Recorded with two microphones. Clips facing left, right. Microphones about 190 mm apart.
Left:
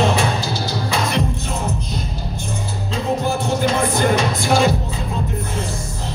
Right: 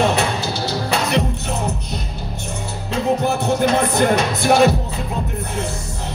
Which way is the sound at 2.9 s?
65° right (ahead or behind).